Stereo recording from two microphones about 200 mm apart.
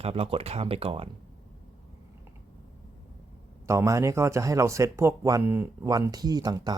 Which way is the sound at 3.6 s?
15° right (ahead or behind).